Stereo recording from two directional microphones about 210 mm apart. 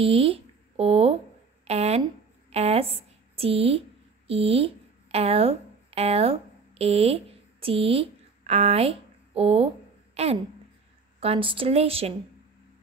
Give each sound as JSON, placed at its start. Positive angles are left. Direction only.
{"t": 0.0, "sound": "speech", "side_deg": -25}
{"t": 1.7, "sound": "a sound", "side_deg": -30}
{"t": 4.3, "sound": "a woman's voice", "side_deg": -25}